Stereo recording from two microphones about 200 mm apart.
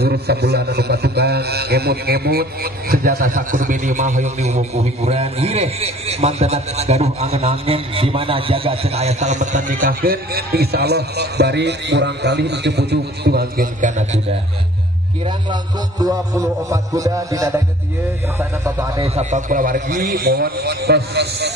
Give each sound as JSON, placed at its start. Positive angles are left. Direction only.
{"t": 0.0, "sound": "a man's voice", "side_deg": -55}
{"t": 16.0, "sound": "a man's voice", "side_deg": -15}
{"t": 19.1, "sound": "a man's voice", "side_deg": -40}